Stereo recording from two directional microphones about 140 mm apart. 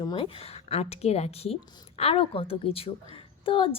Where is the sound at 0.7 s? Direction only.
50° left (ahead or behind).